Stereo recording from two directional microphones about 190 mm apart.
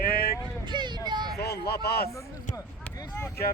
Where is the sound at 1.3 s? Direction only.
60° left (ahead or behind).